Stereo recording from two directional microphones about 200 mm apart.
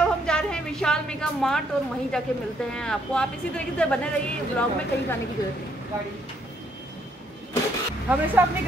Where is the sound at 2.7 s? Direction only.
5° left (ahead or behind).